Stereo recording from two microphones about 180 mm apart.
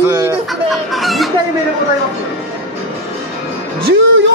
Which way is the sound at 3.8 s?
90° right.